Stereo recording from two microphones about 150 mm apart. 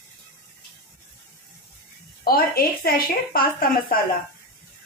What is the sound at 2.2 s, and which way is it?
Speech, 80° left.